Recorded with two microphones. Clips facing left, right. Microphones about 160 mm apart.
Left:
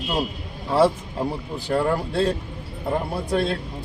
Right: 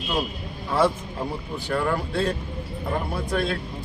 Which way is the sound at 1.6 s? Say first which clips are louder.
Left 3 dB; 30° left (ahead or behind).